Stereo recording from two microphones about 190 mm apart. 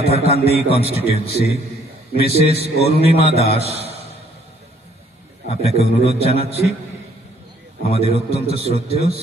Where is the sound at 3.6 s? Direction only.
35° right (ahead or behind).